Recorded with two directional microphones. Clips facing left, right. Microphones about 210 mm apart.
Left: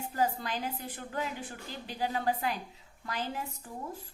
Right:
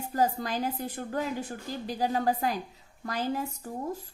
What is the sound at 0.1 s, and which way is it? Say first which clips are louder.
A woman's voice: right 4 dB; 40° right (ahead or behind).